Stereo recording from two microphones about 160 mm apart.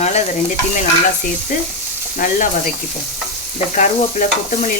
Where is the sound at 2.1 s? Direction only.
55° left (ahead or behind).